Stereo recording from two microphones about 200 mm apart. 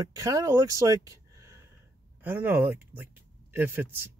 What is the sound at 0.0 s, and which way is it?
Speech, 15° right (ahead or behind).